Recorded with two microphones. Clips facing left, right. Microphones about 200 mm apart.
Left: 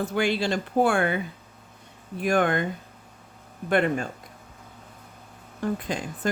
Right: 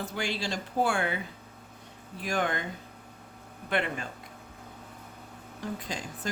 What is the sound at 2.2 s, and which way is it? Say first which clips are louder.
Speech: left 8 dB; 55° left (ahead or behind).